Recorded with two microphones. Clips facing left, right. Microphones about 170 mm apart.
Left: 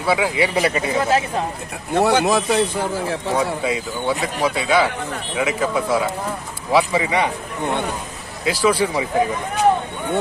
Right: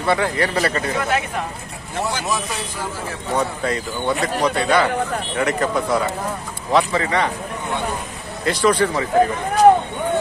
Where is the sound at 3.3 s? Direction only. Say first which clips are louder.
Right 1 dB; 5° left (ahead or behind).